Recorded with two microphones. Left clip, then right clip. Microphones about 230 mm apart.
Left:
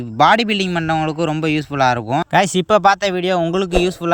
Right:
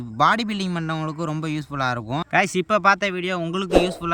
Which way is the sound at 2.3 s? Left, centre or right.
Left.